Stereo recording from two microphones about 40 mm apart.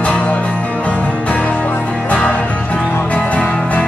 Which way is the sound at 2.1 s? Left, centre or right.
Left.